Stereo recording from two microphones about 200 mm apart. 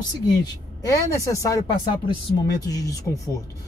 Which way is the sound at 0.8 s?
15° left (ahead or behind).